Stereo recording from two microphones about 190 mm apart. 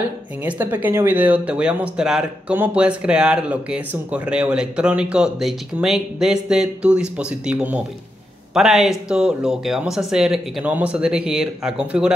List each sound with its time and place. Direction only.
0.4 s speech: 10° right (ahead or behind)